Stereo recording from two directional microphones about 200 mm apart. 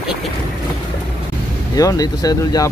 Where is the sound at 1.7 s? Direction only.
20° left (ahead or behind).